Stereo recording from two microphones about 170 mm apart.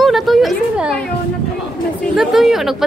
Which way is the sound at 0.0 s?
Centre (ahead or behind).